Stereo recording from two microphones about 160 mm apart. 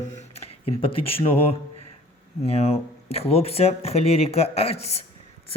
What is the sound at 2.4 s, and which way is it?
Speech, 40° left (ahead or behind).